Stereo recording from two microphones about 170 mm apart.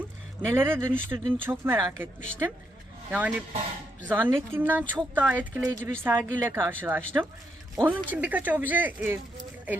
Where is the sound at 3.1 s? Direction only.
5° right (ahead or behind).